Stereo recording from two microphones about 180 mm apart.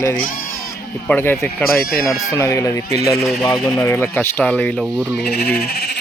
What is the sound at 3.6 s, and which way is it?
Speech, centre (ahead or behind).